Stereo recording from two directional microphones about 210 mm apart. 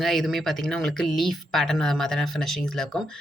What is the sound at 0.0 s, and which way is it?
Speech, centre (ahead or behind).